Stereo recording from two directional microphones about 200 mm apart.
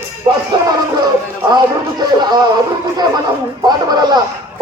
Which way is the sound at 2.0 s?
20° right (ahead or behind).